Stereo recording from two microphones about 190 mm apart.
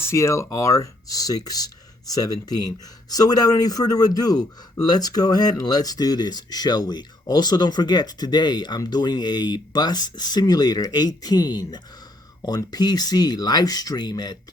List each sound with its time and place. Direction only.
0.0 s a man's voice: 15° left (ahead or behind)